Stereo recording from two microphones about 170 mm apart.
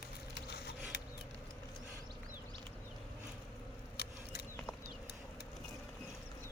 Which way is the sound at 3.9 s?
65° left (ahead or behind).